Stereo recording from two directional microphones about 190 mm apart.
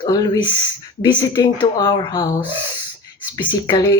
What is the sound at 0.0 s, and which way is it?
A woman's voice, 20° left (ahead or behind).